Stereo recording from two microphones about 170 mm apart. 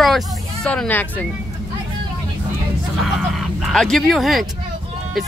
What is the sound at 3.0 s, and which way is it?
Speech, centre (ahead or behind).